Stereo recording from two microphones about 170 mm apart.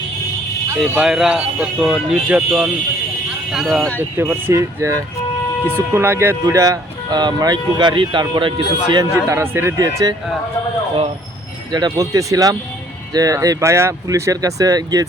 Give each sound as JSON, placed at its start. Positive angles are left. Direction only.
{"t": 0.8, "sound": "speech", "side_deg": -5}
{"t": 4.2, "sound": "speech", "side_deg": -15}
{"t": 9.1, "sound": "speech", "side_deg": -15}
{"t": 11.7, "sound": "speech", "side_deg": -20}